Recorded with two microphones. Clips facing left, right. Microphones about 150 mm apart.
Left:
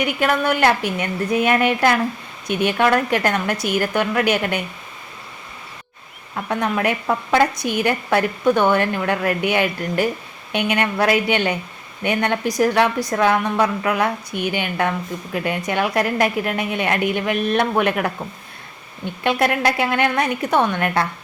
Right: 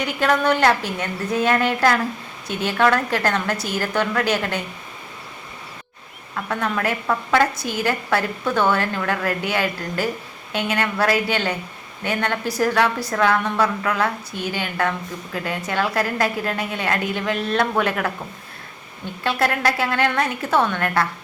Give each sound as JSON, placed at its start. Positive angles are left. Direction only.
{"t": 0.0, "sound": "a woman's voice", "side_deg": 10}
{"t": 6.3, "sound": "a woman's voice", "side_deg": 15}
{"t": 19.2, "sound": "a woman's voice", "side_deg": 20}